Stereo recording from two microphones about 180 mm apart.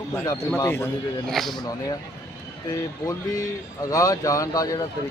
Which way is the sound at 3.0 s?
20° left (ahead or behind).